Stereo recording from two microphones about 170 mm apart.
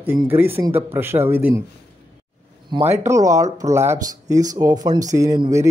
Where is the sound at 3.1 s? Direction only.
20° right (ahead or behind).